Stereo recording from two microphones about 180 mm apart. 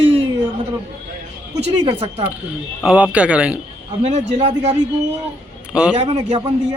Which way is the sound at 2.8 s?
5° right (ahead or behind).